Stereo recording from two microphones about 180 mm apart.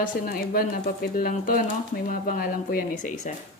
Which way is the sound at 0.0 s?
55° left (ahead or behind).